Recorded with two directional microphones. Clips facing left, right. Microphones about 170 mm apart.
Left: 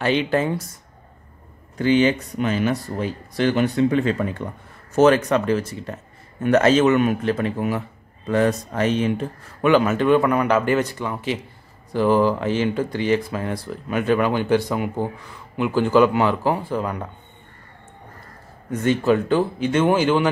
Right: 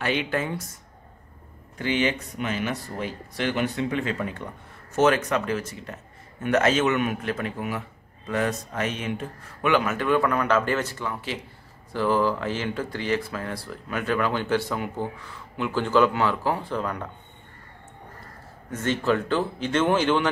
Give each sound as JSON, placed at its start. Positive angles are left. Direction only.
{"t": 0.0, "sound": "speech", "side_deg": 30}
{"t": 1.8, "sound": "speech", "side_deg": 35}
{"t": 18.7, "sound": "speech", "side_deg": 15}